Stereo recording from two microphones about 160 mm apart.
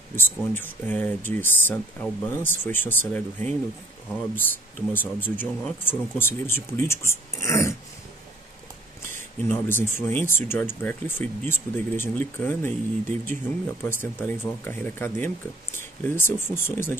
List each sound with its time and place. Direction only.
0.1 s speech: 15° left (ahead or behind)
4.9 s speech: 10° left (ahead or behind)
9.5 s speech: 15° left (ahead or behind)
13.3 s speech: 45° right (ahead or behind)
13.8 s speech: 15° left (ahead or behind)